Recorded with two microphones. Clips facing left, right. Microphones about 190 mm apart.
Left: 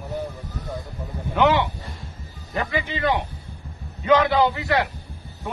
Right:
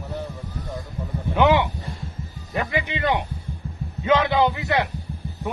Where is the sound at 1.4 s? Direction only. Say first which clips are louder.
Right 1 dB; 15° right (ahead or behind).